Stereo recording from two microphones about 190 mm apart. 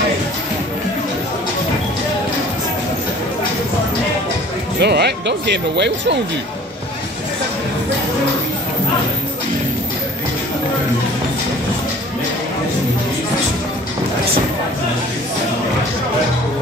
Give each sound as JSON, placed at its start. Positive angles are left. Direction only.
{"t": 4.7, "sound": "speech", "side_deg": -60}